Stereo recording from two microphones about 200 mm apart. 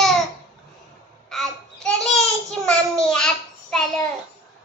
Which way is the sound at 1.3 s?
Centre (ahead or behind).